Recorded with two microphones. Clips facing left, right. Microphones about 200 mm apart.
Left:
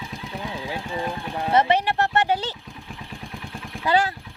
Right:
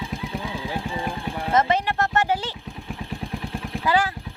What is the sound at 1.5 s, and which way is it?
Speech, 15° left (ahead or behind).